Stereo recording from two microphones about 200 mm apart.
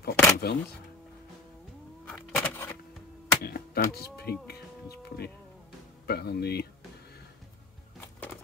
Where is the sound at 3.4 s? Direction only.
50° left (ahead or behind).